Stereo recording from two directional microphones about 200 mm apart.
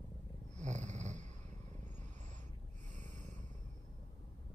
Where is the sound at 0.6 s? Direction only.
35° right (ahead or behind).